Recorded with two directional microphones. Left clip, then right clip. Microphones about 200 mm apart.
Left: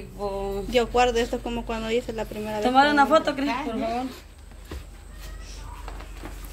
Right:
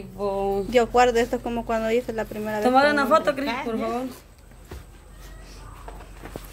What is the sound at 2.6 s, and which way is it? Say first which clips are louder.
A woman's voice: even; 60° right (ahead or behind).